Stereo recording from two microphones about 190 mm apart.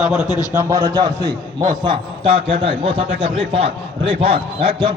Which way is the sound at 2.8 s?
30° right (ahead or behind).